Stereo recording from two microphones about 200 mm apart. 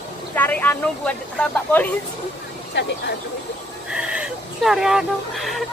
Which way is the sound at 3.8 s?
5° right (ahead or behind).